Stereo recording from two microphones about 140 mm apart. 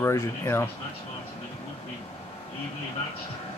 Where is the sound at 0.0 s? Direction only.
20° left (ahead or behind).